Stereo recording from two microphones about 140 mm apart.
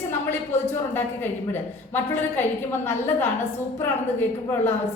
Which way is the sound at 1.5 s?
15° left (ahead or behind).